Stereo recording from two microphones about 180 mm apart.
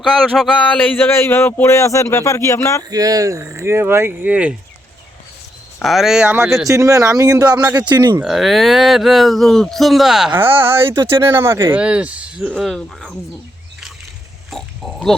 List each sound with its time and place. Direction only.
0.0 s speech: 5° left (ahead or behind)
2.9 s speech: 20° right (ahead or behind)
5.8 s speech: centre (ahead or behind)
6.7 s speech: 15° right (ahead or behind)
8.2 s speech: centre (ahead or behind)
14.5 s pig: centre (ahead or behind)